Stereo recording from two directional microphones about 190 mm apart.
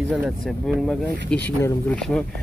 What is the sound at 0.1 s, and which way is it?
Speech, 5° right (ahead or behind).